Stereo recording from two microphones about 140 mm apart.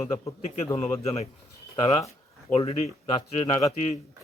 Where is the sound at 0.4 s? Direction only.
55° left (ahead or behind).